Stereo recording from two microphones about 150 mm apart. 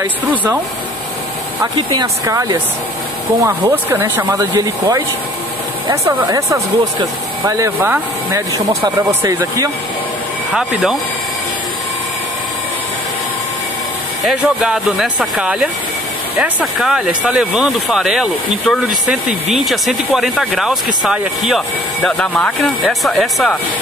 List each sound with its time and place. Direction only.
0.3 s speech: 10° right (ahead or behind)
1.6 s speech: 30° right (ahead or behind)
6.0 s speech: 20° right (ahead or behind)
10.5 s speech: centre (ahead or behind)
14.4 s speech: 5° right (ahead or behind)